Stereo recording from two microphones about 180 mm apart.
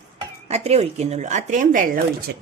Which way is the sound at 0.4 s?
35° right (ahead or behind).